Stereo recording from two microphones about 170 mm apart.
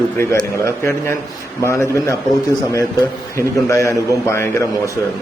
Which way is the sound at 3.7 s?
15° left (ahead or behind).